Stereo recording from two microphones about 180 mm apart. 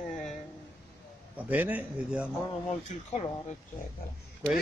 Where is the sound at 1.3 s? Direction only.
10° right (ahead or behind).